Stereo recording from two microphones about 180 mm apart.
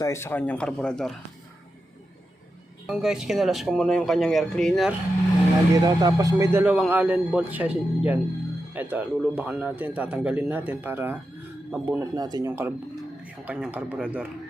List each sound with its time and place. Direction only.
0.0 s speech: 15° left (ahead or behind)
2.8 s speech: centre (ahead or behind)
5.7 s speech: 20° right (ahead or behind)